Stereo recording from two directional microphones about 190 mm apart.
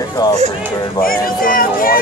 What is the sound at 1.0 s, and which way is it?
Speech, 50° left (ahead or behind).